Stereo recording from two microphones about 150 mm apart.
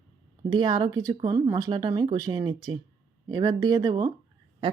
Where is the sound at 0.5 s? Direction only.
25° right (ahead or behind).